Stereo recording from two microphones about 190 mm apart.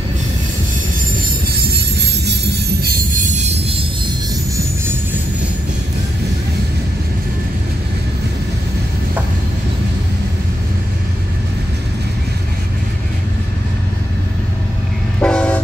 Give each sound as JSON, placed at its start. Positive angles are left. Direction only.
{"t": 2.0, "sound": "music", "side_deg": -60}
{"t": 3.3, "sound": "music", "side_deg": -35}
{"t": 15.1, "sound": "train", "side_deg": 5}